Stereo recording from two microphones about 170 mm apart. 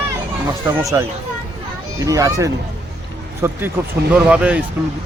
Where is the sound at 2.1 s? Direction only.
20° right (ahead or behind).